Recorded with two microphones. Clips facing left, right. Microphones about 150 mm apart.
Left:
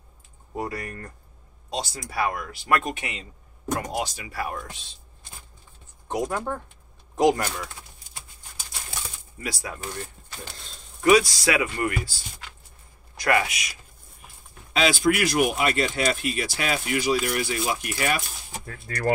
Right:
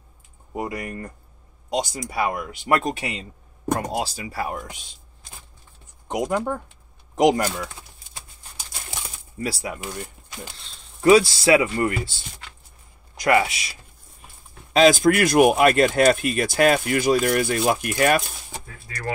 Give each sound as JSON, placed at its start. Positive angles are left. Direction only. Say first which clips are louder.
{"t": 0.5, "sound": "speech", "louder": "right 2 dB", "side_deg": -15}
{"t": 2.8, "sound": "a man's voice", "louder": "right 5 dB", "side_deg": -30}
{"t": 6.0, "sound": "speech", "louder": "right 3 dB", "side_deg": -20}
{"t": 9.4, "sound": "speech", "louder": "right 5 dB", "side_deg": -30}
{"t": 9.7, "sound": "speech", "louder": "right 3 dB", "side_deg": -15}
{"t": 11.0, "sound": "speech", "louder": "right 3 dB", "side_deg": -30}
{"t": 14.7, "sound": "speech", "louder": "right 6 dB", "side_deg": -40}